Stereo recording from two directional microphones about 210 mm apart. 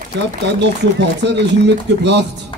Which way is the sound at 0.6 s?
55° right (ahead or behind).